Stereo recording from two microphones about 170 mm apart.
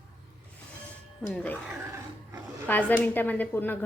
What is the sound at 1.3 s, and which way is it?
Speech, 10° left (ahead or behind).